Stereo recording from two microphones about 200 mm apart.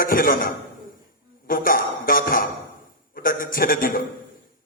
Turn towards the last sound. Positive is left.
turn(degrees=45)  # may be behind; listen again after turning